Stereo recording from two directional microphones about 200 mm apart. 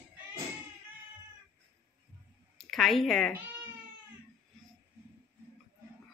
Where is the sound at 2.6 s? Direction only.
Centre (ahead or behind).